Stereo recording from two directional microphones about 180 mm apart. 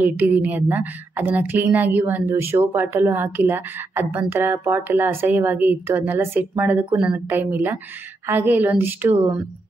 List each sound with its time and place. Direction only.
0.0 s a woman's voice: 10° right (ahead or behind)